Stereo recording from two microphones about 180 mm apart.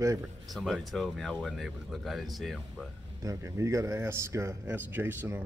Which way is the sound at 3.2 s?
20° right (ahead or behind).